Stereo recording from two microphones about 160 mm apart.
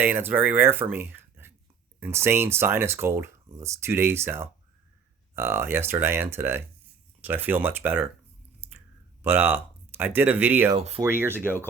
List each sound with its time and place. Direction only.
0.0 s speech: 10° right (ahead or behind)
9.2 s speech: 15° right (ahead or behind)
10.8 s speech: 35° right (ahead or behind)
11.2 s speech: 15° right (ahead or behind)